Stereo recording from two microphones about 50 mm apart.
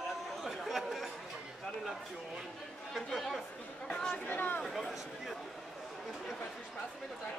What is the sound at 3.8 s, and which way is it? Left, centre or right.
Chatter, centre.